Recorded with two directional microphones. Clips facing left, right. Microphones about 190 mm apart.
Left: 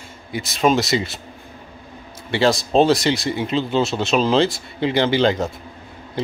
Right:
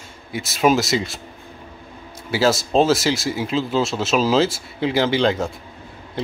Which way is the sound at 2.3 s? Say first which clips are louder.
Left 1 dB; centre (ahead or behind).